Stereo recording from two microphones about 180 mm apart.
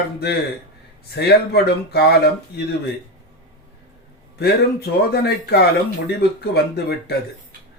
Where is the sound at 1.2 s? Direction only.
65° left (ahead or behind).